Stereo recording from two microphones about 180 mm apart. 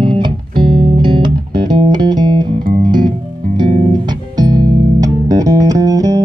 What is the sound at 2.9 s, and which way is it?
Music, 25° right (ahead or behind).